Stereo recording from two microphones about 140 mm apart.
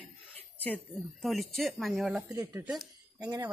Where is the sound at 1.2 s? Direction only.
Centre (ahead or behind).